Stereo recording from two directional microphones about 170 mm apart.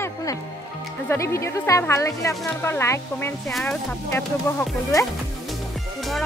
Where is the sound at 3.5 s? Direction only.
Centre (ahead or behind).